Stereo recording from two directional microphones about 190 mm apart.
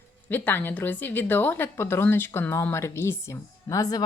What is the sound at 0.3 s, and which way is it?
Speech, 10° left (ahead or behind).